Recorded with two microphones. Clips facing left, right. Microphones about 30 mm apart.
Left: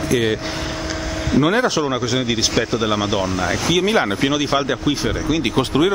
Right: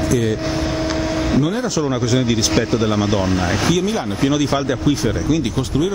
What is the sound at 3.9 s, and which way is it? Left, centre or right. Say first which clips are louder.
Speech: left 4 dB; left.